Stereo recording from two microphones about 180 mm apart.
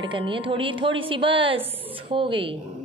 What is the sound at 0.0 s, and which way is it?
A woman's voice, 30° right (ahead or behind).